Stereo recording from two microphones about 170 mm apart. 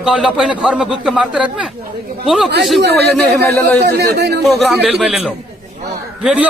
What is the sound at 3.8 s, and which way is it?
Speech, 75° right (ahead or behind).